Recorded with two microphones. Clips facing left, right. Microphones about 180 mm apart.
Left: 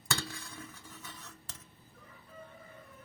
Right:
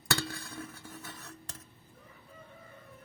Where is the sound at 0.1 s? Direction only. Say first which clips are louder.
Right 4 dB; 65° right (ahead or behind).